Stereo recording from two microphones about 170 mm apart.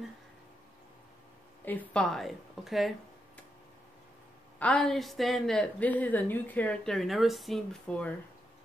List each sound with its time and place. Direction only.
1.6 s a woman's voice: 10° left (ahead or behind)
4.6 s a woman's voice: 5° left (ahead or behind)